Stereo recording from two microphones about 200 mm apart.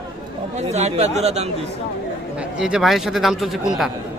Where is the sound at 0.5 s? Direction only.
35° right (ahead or behind).